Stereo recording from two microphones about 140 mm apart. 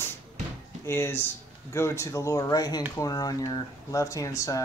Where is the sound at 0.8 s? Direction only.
15° left (ahead or behind).